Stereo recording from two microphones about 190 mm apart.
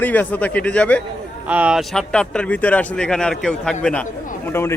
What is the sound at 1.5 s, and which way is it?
A man's voice, 5° right (ahead or behind).